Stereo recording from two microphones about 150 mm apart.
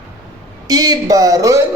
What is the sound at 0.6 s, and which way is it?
Speech, 25° right (ahead or behind).